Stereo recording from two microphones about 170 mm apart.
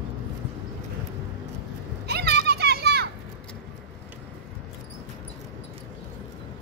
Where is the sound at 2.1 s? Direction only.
70° right (ahead or behind).